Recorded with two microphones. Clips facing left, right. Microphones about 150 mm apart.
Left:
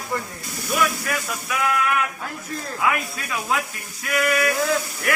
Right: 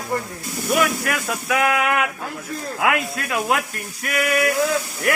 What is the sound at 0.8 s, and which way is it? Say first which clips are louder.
Speech: right 2 dB; 80° right.